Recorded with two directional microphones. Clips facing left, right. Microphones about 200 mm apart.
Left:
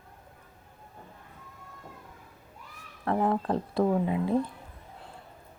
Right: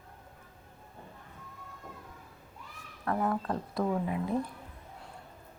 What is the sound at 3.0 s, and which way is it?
Speech, 25° left (ahead or behind).